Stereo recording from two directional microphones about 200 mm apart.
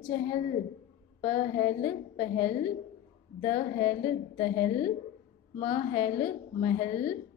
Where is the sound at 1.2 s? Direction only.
30° left (ahead or behind).